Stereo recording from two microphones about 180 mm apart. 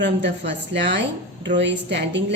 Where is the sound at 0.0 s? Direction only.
75° right (ahead or behind).